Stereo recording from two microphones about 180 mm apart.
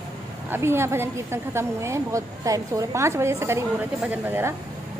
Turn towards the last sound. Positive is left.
turn(degrees=-10)  # may be behind; listen again after turning